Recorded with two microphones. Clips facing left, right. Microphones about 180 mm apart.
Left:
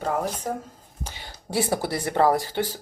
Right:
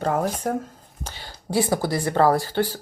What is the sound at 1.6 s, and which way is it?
Speech, 25° left (ahead or behind).